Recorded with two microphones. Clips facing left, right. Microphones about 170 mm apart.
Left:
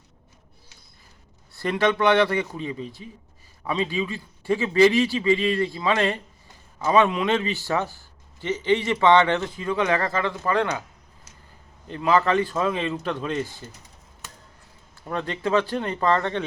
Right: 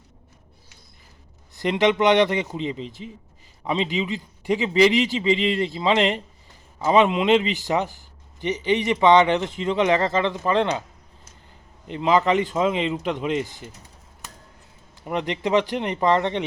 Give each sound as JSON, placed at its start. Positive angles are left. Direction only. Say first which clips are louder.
{"t": 1.5, "sound": "a man's voice", "louder": "right 2 dB", "side_deg": -20}
{"t": 11.9, "sound": "speech", "louder": "right 1 dB", "side_deg": -20}
{"t": 15.0, "sound": "speech", "louder": "right 2 dB", "side_deg": -20}